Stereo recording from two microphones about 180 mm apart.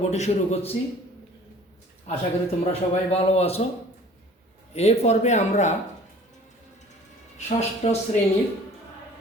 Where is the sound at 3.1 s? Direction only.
35° left (ahead or behind).